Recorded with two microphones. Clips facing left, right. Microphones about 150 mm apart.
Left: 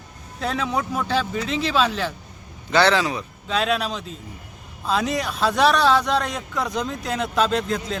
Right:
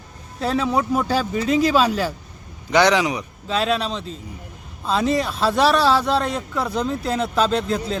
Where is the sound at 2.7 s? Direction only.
15° right (ahead or behind).